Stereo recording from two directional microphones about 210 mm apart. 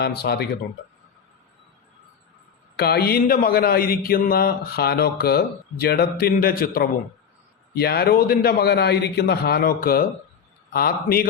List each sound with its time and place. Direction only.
0.0 s speech: 50° left (ahead or behind)
2.7 s speech: 50° left (ahead or behind)